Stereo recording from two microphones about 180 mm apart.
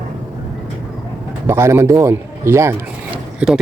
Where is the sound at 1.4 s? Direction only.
15° right (ahead or behind).